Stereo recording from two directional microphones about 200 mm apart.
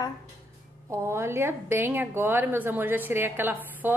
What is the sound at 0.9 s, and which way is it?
A woman's voice, 15° right (ahead or behind).